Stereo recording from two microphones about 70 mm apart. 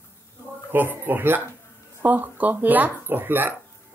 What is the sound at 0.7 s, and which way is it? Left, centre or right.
Speech, right.